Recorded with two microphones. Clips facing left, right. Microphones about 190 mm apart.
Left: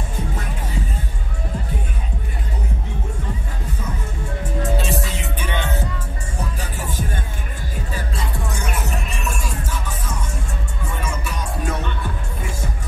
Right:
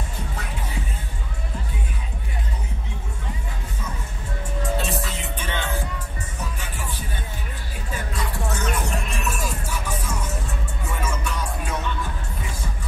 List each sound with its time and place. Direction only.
4.7 s music: centre (ahead or behind)
5.5 s music: 20° left (ahead or behind)
6.6 s music: 40° left (ahead or behind)
8.5 s music: 5° left (ahead or behind)